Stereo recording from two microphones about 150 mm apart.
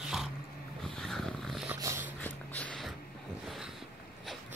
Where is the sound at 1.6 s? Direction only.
20° right (ahead or behind).